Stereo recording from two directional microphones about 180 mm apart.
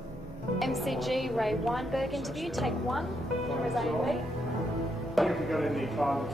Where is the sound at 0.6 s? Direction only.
Centre (ahead or behind).